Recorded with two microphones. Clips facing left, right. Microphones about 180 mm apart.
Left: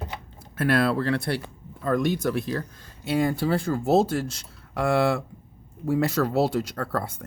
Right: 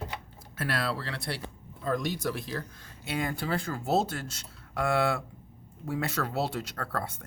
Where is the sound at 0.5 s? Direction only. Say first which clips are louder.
Left 10 dB; 55° left (ahead or behind).